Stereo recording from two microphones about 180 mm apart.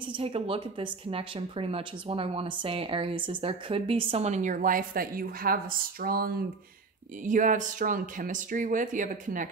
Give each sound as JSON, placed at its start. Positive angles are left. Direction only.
{"t": 0.1, "sound": "a woman's voice", "side_deg": -30}